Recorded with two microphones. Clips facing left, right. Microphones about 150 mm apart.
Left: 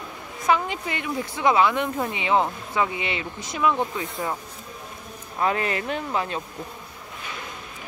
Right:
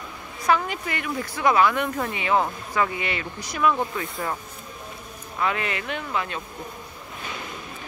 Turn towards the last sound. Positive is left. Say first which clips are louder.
# left 2 dB
turn(degrees=35)  # may be behind; listen again after turning